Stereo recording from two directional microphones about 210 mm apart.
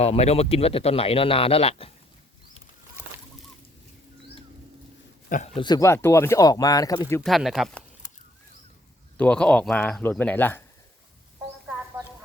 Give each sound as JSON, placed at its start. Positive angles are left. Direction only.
{"t": 0.0, "sound": "speech", "side_deg": 30}
{"t": 5.5, "sound": "speech", "side_deg": 20}
{"t": 7.2, "sound": "speech", "side_deg": 0}
{"t": 9.1, "sound": "speech", "side_deg": 5}